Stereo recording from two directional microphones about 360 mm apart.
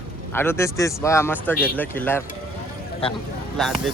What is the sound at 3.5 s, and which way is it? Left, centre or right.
Speech, centre.